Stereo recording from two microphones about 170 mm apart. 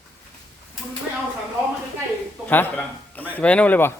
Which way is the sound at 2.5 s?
10° left (ahead or behind).